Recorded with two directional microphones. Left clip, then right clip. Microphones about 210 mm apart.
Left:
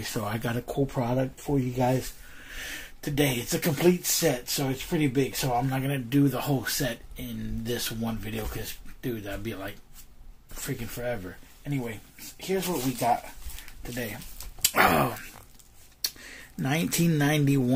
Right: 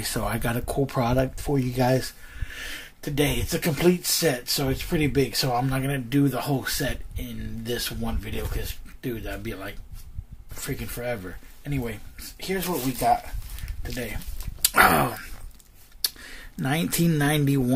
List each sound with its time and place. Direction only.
0.0 s speech: 15° right (ahead or behind)
2.5 s speech: centre (ahead or behind); by 12.4 s 20° right (ahead or behind)
12.4 s speech: 10° right (ahead or behind)